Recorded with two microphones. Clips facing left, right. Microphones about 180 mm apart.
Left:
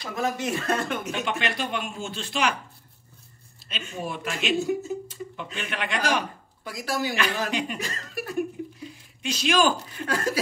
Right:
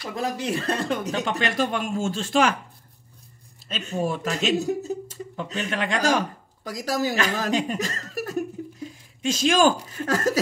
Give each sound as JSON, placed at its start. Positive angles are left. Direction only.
{"t": 0.1, "sound": "speech", "side_deg": -30}
{"t": 3.6, "sound": "speech", "side_deg": -40}